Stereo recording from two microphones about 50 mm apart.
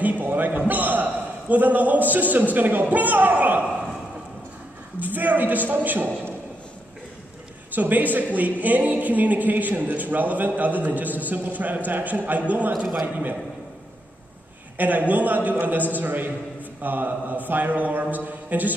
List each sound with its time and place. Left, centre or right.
0.0 s a man's voice: right
5.0 s speech: right
7.7 s speech: right
14.8 s speech: right